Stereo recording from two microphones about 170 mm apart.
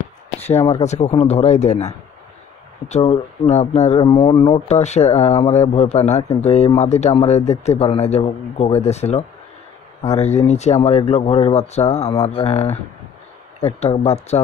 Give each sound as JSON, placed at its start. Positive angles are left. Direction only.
{"t": 0.6, "sound": "speech", "side_deg": 20}
{"t": 0.8, "sound": "speech", "side_deg": 40}
{"t": 2.9, "sound": "speech", "side_deg": 40}
{"t": 4.0, "sound": "speech", "side_deg": 30}
{"t": 13.7, "sound": "speech", "side_deg": 40}